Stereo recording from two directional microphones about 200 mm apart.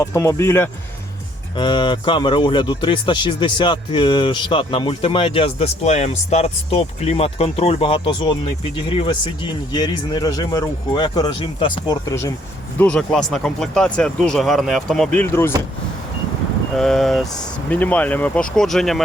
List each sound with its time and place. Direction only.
0.0 s speech: 15° left (ahead or behind)
1.5 s speech: 25° left (ahead or behind)
12.8 s speech: 5° left (ahead or behind)
16.7 s speech: centre (ahead or behind)